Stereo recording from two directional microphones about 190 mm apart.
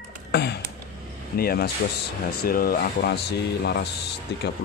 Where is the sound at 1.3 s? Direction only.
55° left (ahead or behind).